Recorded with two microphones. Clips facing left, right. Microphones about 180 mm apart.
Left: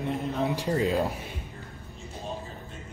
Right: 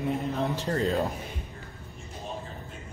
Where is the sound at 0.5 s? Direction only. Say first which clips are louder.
Left 2 dB; 10° left (ahead or behind).